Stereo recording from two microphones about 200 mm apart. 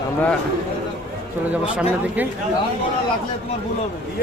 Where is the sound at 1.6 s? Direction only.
5° right (ahead or behind).